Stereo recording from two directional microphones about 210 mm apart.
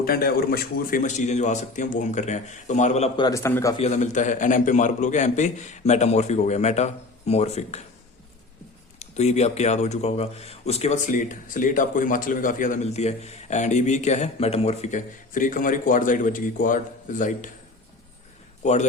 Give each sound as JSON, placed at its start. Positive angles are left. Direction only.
{"t": 0.0, "sound": "speech", "side_deg": 45}
{"t": 3.2, "sound": "a man's voice", "side_deg": 10}
{"t": 3.8, "sound": "speech", "side_deg": 35}
{"t": 9.0, "sound": "speech", "side_deg": 30}
{"t": 18.6, "sound": "speech", "side_deg": 35}